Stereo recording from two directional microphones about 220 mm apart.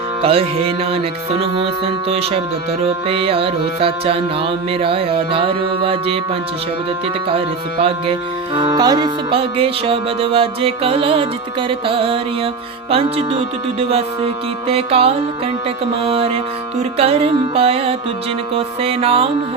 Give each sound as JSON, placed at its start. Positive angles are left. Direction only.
{"t": 0.2, "sound": "music", "side_deg": -25}
{"t": 7.3, "sound": "music", "side_deg": -25}